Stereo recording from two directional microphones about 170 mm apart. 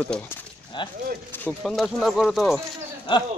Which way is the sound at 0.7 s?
25° left (ahead or behind).